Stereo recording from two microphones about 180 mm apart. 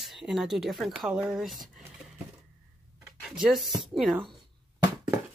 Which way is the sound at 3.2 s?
5° right (ahead or behind).